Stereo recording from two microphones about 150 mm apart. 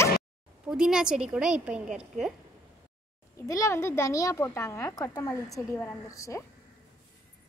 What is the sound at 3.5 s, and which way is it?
A child's voice, 20° left (ahead or behind).